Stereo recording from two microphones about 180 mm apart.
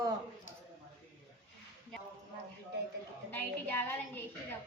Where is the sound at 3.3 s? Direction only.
10° left (ahead or behind).